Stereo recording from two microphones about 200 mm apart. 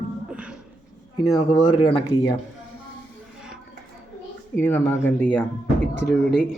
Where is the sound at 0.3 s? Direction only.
5° right (ahead or behind).